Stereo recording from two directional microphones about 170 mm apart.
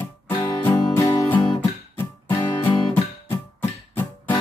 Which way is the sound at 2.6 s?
15° left (ahead or behind).